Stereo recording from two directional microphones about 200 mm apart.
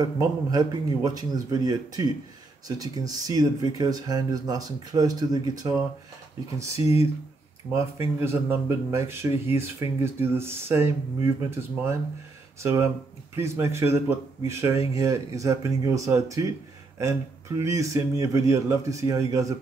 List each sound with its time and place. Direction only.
0.0 s a man's voice: 20° right (ahead or behind)
17.6 s a man's voice: 15° right (ahead or behind)